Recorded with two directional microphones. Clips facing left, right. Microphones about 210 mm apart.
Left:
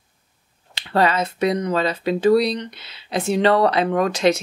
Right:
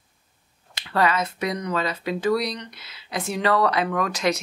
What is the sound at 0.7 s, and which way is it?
Speech, 30° left (ahead or behind).